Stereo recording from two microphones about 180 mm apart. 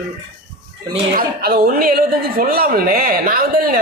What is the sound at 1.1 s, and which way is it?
A woman's voice, 55° right (ahead or behind).